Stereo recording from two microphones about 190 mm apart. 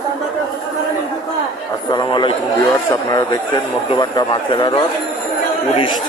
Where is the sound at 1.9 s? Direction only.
25° left (ahead or behind).